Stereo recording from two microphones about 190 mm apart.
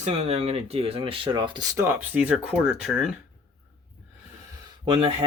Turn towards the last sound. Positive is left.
turn(degrees=-30)  # may be behind; listen again after turning